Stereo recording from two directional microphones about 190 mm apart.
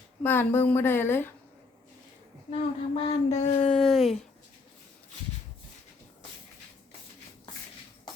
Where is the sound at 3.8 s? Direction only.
Centre (ahead or behind).